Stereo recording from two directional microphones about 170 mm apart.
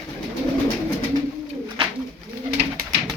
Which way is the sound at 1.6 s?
25° right (ahead or behind).